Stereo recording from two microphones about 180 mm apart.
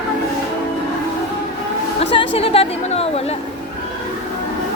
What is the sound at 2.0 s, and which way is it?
A woman's voice, 30° left (ahead or behind).